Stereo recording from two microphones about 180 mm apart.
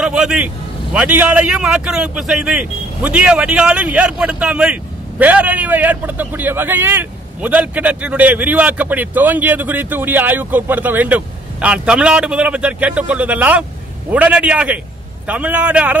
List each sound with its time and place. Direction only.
0.0 s a man's voice: 5° right (ahead or behind)